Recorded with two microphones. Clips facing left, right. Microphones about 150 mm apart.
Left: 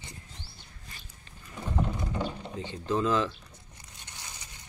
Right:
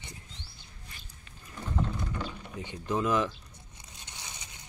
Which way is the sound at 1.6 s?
20° left (ahead or behind).